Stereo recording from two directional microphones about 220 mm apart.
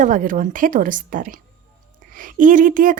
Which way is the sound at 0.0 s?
35° right (ahead or behind).